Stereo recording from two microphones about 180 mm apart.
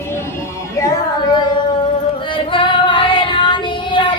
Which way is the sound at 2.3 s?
25° left (ahead or behind).